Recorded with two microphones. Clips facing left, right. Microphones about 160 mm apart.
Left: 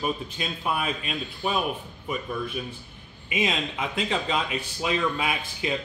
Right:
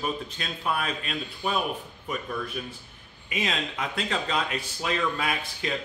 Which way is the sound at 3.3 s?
5° left (ahead or behind).